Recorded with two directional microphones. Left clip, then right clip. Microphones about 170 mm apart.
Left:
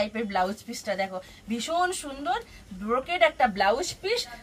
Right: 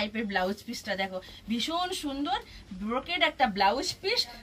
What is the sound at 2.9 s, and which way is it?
A woman's voice, 25° left (ahead or behind).